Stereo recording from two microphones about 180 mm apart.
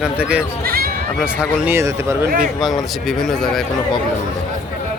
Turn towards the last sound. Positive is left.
turn(degrees=5)  # may be behind; listen again after turning